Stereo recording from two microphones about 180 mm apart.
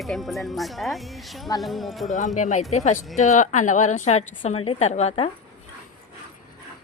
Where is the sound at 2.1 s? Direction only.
45° left (ahead or behind).